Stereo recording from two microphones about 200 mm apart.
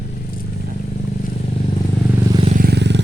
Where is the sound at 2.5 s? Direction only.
45° right (ahead or behind).